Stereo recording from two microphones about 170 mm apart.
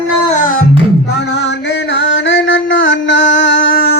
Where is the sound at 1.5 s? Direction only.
90° left.